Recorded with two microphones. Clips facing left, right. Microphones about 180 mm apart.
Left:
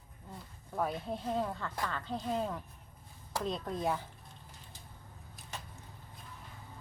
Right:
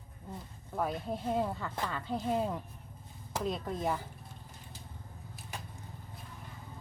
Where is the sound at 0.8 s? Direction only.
5° right (ahead or behind).